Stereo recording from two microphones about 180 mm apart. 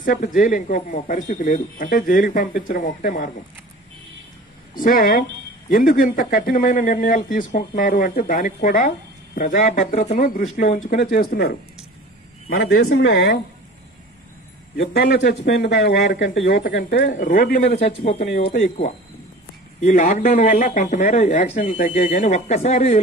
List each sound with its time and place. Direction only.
0.0 s speech: 45° left (ahead or behind)
4.7 s speech: 50° left (ahead or behind); by 13.4 s 70° left (ahead or behind)
14.8 s a man's voice: 55° left (ahead or behind)
17.0 s speech: 45° left (ahead or behind)
17.7 s speech: 40° left (ahead or behind)